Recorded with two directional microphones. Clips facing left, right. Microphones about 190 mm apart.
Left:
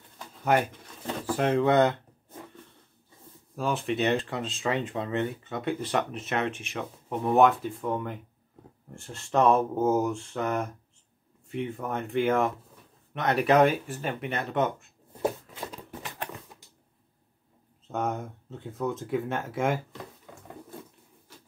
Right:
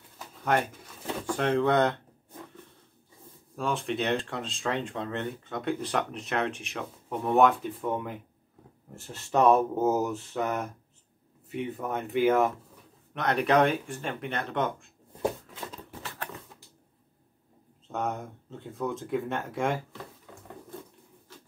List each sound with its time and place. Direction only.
1.2 s speech: 5° left (ahead or behind)
3.5 s speech: 5° left (ahead or behind)
15.6 s a sound: 15° left (ahead or behind)
17.9 s speech: centre (ahead or behind)